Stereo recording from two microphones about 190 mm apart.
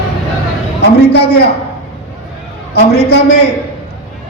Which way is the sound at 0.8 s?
60° left (ahead or behind).